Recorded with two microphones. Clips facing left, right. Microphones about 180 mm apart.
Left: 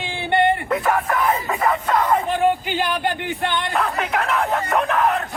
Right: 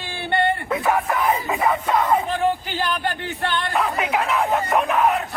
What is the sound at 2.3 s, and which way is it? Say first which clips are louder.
A man's voice: left 3 dB; 15° left (ahead or behind).